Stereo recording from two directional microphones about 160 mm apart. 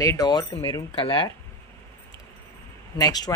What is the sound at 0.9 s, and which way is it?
Speech, 35° left (ahead or behind).